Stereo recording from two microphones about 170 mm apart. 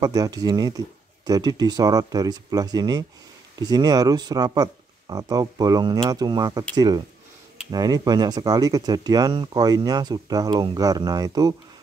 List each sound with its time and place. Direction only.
0.0 s speech: 20° right (ahead or behind)